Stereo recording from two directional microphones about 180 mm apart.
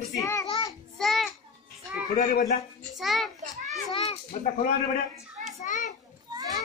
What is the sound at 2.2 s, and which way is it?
Speech, 45° left (ahead or behind).